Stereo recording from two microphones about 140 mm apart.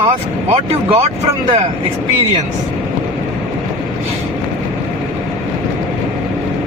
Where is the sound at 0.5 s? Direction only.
40° right (ahead or behind).